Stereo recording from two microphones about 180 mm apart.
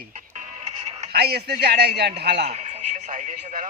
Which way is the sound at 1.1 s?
60° right (ahead or behind).